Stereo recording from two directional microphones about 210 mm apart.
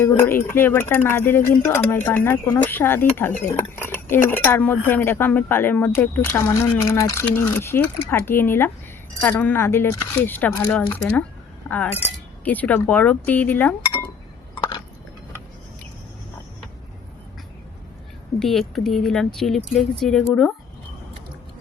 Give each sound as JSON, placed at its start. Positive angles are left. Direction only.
{"t": 0.0, "sound": "speech", "side_deg": 10}
{"t": 14.5, "sound": "chewing", "side_deg": 25}
{"t": 18.3, "sound": "speech", "side_deg": 0}